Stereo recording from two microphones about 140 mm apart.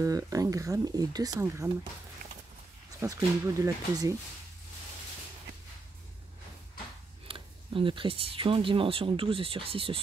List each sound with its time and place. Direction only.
0.0 s speech: 25° right (ahead or behind)
3.0 s speech: 20° right (ahead or behind)
7.2 s speech: 40° right (ahead or behind)